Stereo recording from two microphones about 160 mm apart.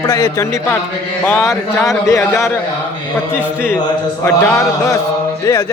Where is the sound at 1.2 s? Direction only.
5° left (ahead or behind).